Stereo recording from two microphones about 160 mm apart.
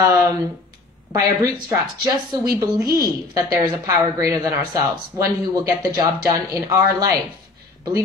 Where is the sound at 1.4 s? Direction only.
20° right (ahead or behind).